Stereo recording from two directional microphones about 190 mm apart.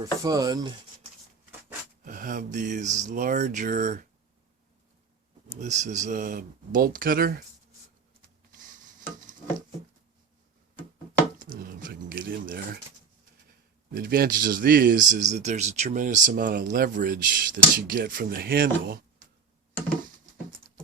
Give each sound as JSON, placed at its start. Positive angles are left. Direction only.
{"t": 0.0, "sound": "speech", "side_deg": -20}
{"t": 2.0, "sound": "speech", "side_deg": -45}
{"t": 5.5, "sound": "speech", "side_deg": -40}
{"t": 8.5, "sound": "a sound", "side_deg": -45}
{"t": 11.3, "sound": "a sound", "side_deg": -45}
{"t": 13.9, "sound": "speech", "side_deg": -50}